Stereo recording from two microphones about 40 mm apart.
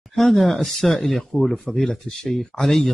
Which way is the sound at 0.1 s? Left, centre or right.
Centre.